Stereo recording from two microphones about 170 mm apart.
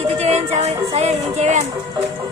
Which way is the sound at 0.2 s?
40° right (ahead or behind).